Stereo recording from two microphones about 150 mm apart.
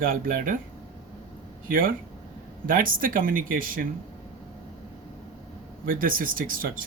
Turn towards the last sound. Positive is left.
turn(degrees=-70)  # may be behind; listen again after turning